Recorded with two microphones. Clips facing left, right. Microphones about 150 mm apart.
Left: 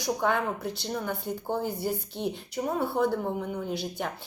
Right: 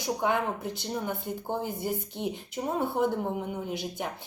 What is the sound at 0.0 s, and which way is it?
A woman's voice, 15° right (ahead or behind).